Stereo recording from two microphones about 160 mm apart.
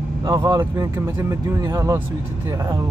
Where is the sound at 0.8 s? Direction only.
15° right (ahead or behind).